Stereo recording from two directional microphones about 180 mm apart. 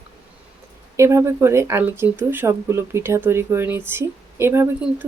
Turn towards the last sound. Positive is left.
turn(degrees=-10)  # may be behind; listen again after turning